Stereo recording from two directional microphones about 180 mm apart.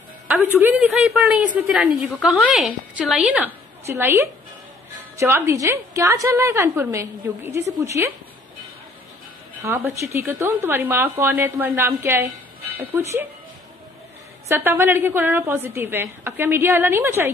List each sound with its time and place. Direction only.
0.3 s a woman's voice: 10° right (ahead or behind)
9.6 s a woman's voice: 15° right (ahead or behind)
14.5 s a woman's voice: 10° right (ahead or behind)